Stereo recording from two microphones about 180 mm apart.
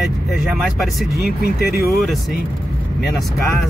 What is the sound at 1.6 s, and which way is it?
Speech, 60° left (ahead or behind).